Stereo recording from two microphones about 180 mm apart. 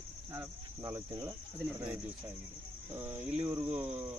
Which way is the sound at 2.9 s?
10° right (ahead or behind).